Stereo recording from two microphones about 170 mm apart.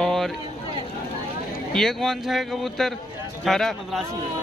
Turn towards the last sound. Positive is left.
turn(degrees=0)  # may be behind; listen again after turning